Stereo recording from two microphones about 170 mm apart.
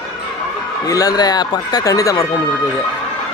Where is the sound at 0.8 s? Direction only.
20° left (ahead or behind).